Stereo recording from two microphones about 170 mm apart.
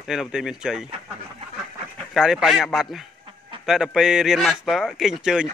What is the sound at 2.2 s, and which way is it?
Speech, 5° right (ahead or behind).